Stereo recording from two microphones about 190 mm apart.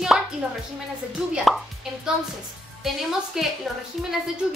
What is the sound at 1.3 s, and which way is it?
A woman's voice, centre (ahead or behind).